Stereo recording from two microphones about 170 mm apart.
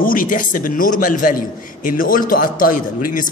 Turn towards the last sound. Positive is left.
turn(degrees=55)  # may be behind; listen again after turning